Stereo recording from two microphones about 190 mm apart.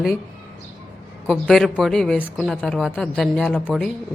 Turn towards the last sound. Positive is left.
turn(degrees=0)  # may be behind; listen again after turning